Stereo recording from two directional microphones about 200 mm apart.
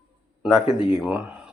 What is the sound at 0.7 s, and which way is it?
Speech, 25° left (ahead or behind).